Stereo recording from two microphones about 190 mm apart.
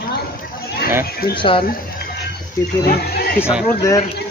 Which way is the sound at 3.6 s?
15° left (ahead or behind).